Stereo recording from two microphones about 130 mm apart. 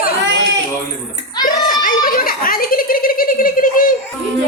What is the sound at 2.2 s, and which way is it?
A child's voice, 90° left.